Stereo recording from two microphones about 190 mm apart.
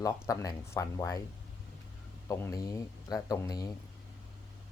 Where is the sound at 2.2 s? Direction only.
15° left (ahead or behind).